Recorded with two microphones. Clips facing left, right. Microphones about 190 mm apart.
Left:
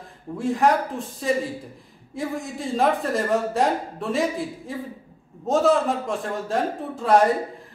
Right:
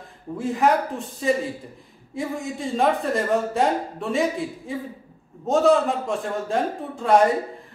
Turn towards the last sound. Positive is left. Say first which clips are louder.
# even
turn(degrees=0)  # may be behind; listen again after turning